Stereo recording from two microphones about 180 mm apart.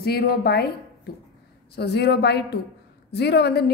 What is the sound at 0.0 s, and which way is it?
Speech, 60° left (ahead or behind).